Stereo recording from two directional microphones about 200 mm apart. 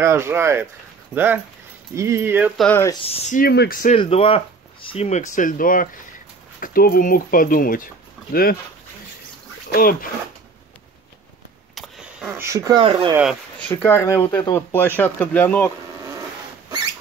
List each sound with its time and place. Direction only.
0.0 s speech: 15° right (ahead or behind)
2.6 s speech: 10° left (ahead or behind)
3.1 s speech: 35° left (ahead or behind)
3.4 s speech: 50° left (ahead or behind)
3.9 s speech: 30° left (ahead or behind); by 8.5 s 45° left (ahead or behind)
9.7 s speech: 45° left (ahead or behind)
11.7 s fart: centre (ahead or behind)
12.4 s speech: 15° right (ahead or behind)
13.1 s speech: 5° right (ahead or behind)
13.7 s speech: 10° left (ahead or behind)